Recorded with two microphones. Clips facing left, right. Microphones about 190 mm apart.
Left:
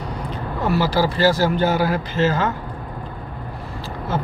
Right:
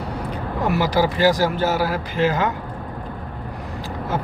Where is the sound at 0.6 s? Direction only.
15° right (ahead or behind).